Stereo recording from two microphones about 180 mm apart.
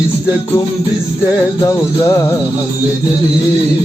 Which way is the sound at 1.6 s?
15° left (ahead or behind).